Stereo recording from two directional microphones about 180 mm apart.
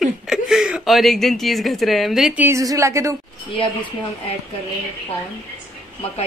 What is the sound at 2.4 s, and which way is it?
Speech, 15° right (ahead or behind).